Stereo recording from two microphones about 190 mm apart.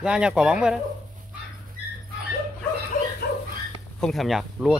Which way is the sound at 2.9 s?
45° left (ahead or behind).